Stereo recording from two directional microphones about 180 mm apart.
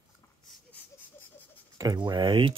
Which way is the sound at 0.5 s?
10° left (ahead or behind).